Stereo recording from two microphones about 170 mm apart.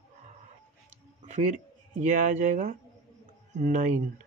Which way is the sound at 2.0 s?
45° right (ahead or behind).